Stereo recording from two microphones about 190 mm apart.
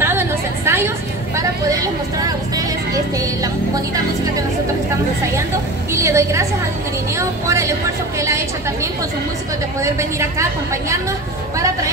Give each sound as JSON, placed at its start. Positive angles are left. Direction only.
{"t": 0.0, "sound": "a sound", "side_deg": -10}
{"t": 5.9, "sound": "a woman's voice", "side_deg": -15}
{"t": 9.8, "sound": "a woman's voice", "side_deg": -15}